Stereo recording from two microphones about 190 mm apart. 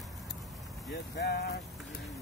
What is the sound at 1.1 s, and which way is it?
Speech, 60° left (ahead or behind).